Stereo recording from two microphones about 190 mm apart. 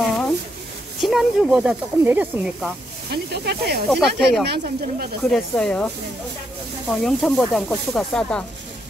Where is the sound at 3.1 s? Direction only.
60° right (ahead or behind).